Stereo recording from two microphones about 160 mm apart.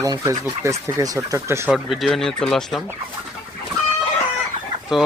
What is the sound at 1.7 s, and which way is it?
Speech, centre (ahead or behind).